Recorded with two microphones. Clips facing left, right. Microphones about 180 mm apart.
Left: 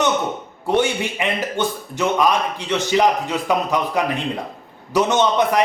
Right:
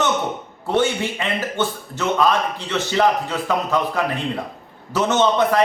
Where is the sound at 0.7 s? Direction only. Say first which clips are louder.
Left 1 dB; 15° left (ahead or behind).